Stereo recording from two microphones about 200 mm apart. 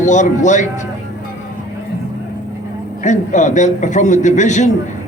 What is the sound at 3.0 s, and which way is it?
A man's voice, 40° left (ahead or behind).